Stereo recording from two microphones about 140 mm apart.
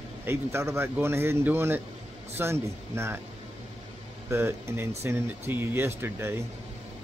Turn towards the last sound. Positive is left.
turn(degrees=-20)  # may be behind; listen again after turning